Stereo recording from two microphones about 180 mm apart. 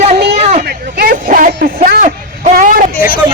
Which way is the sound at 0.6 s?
55° right (ahead or behind).